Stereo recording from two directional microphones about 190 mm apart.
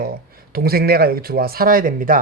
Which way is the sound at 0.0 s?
50° right (ahead or behind).